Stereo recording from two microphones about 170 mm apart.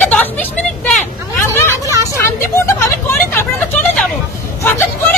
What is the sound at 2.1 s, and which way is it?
Speech, 15° left (ahead or behind).